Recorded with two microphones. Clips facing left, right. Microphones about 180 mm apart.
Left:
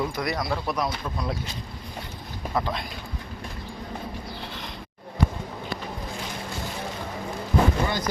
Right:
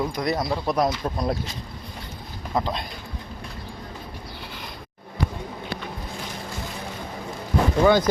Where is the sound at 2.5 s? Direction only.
20° right (ahead or behind).